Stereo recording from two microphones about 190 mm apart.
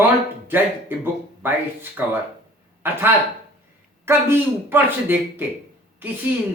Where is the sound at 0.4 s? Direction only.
10° right (ahead or behind).